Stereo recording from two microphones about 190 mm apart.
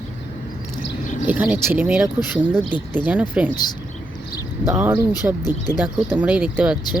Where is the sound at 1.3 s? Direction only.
10° right (ahead or behind).